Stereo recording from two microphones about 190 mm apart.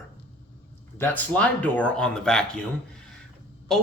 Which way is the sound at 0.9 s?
10° left (ahead or behind).